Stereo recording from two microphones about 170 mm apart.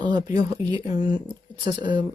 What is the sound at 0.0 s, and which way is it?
Speech, 25° right (ahead or behind).